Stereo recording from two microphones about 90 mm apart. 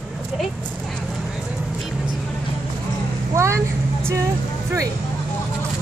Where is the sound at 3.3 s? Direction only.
30° right (ahead or behind).